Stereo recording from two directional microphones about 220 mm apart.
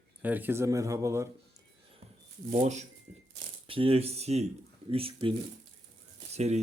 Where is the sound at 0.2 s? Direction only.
10° right (ahead or behind).